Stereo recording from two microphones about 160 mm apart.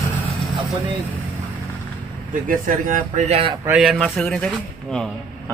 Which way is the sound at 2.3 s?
55° right (ahead or behind).